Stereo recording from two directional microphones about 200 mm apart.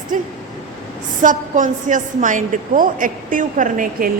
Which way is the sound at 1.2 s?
40° right (ahead or behind).